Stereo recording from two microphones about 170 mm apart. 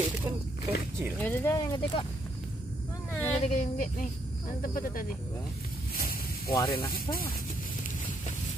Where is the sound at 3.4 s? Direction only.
50° left (ahead or behind).